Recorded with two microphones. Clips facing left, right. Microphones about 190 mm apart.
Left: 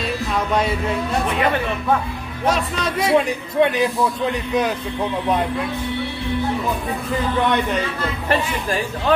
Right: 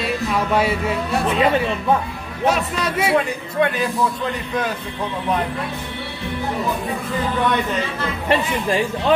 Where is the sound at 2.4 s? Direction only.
5° right (ahead or behind).